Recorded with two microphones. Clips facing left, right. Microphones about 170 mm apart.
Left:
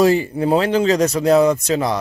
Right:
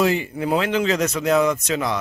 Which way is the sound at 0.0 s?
35° left (ahead or behind).